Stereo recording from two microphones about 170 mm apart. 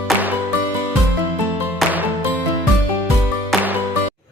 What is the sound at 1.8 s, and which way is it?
Music, 10° right (ahead or behind).